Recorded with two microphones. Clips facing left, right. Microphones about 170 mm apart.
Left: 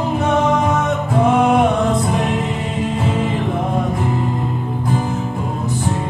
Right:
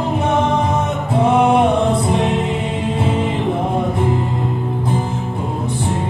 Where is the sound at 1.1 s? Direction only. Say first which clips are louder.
Right 1 dB; 30° right (ahead or behind).